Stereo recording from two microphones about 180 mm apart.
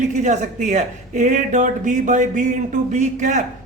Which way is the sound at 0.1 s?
40° right (ahead or behind).